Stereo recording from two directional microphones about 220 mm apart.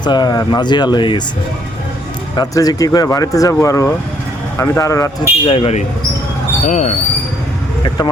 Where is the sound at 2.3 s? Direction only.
15° left (ahead or behind).